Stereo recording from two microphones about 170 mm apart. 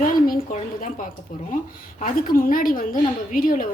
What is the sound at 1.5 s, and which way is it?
A woman's voice, 55° left (ahead or behind).